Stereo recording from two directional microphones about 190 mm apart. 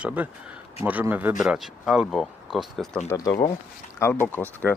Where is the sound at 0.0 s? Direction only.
5° right (ahead or behind).